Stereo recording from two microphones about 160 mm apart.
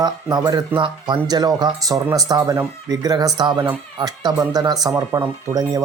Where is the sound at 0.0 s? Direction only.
25° right (ahead or behind).